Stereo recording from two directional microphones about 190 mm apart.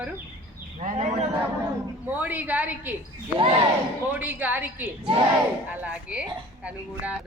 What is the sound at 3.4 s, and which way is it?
Speech, 30° right (ahead or behind).